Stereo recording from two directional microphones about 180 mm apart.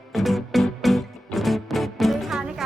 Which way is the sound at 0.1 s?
Centre (ahead or behind).